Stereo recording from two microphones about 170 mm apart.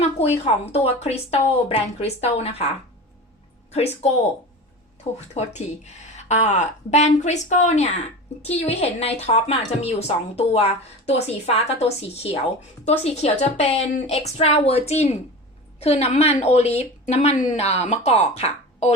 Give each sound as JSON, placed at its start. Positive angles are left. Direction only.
{"t": 0.0, "sound": "a woman's voice", "side_deg": 35}
{"t": 5.3, "sound": "a woman's voice", "side_deg": 40}